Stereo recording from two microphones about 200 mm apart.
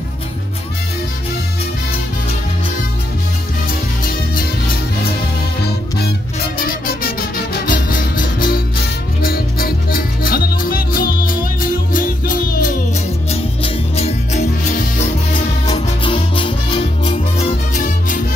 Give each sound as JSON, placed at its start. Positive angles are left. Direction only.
{"t": 5.7, "sound": "music", "side_deg": 50}
{"t": 13.3, "sound": "music", "side_deg": 30}
{"t": 15.6, "sound": "music", "side_deg": 25}